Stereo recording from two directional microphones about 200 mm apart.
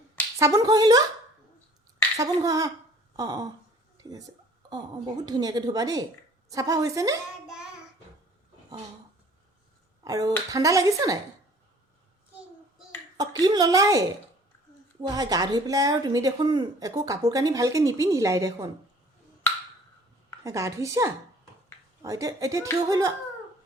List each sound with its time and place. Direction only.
0.3 s a woman's voice: 15° right (ahead or behind)
2.1 s a woman's voice: 15° right (ahead or behind)
3.9 s a sound: 20° right (ahead or behind)
4.7 s a woman's voice: 20° right (ahead or behind)
7.4 s child singing: 5° right (ahead or behind)
10.0 s a woman's voice: 15° right (ahead or behind)
13.1 s a woman's voice: 20° right (ahead or behind)
15.0 s a woman's voice: 20° right (ahead or behind)
20.4 s a woman's voice: 15° right (ahead or behind)